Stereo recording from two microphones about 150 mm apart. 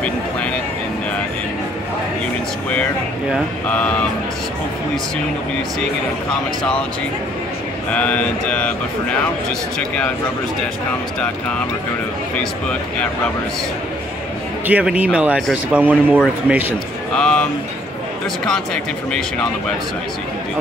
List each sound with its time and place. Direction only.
3.6 s mantra: 10° left (ahead or behind)
7.9 s mantra: 10° left (ahead or behind)
14.7 s speech: 10° right (ahead or behind)
17.1 s speech: 5° left (ahead or behind)